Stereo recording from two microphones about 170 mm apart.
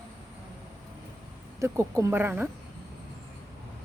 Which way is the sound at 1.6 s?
15° right (ahead or behind).